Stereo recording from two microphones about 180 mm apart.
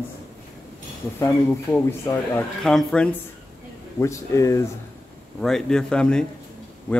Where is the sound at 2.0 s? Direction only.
15° left (ahead or behind).